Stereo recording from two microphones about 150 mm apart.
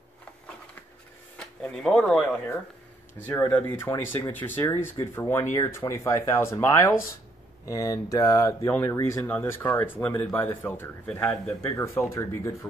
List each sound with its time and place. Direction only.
1.4 s speech: 5° left (ahead or behind)
3.3 s speech: 15° left (ahead or behind)